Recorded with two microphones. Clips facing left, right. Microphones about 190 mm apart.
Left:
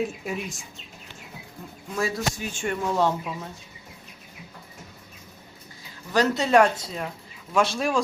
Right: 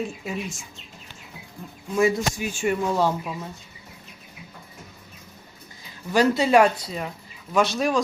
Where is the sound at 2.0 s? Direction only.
20° right (ahead or behind).